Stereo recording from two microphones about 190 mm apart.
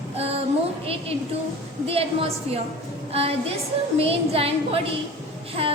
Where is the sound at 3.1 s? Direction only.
30° right (ahead or behind).